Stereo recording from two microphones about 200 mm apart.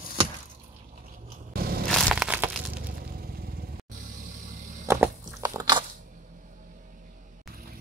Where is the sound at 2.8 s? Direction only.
50° right (ahead or behind).